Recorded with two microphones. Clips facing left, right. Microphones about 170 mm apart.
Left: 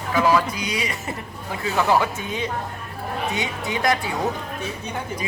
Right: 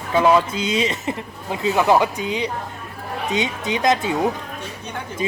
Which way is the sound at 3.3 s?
20° right (ahead or behind).